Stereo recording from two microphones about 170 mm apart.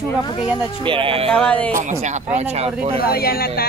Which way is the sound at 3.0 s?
65° left (ahead or behind).